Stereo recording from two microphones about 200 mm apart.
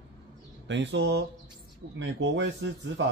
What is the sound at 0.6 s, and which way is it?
Speech, 65° right (ahead or behind).